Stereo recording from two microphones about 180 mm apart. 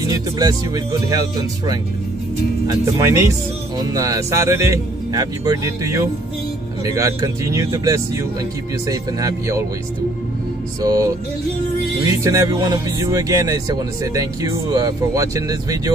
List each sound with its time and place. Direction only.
0.1 s speech: 20° right (ahead or behind)
2.7 s speech: 15° right (ahead or behind)
10.8 s speech: 20° right (ahead or behind)
12.1 s speech: 15° right (ahead or behind)